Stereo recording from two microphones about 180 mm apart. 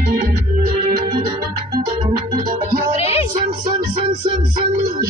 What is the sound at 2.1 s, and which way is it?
Music, 55° right (ahead or behind).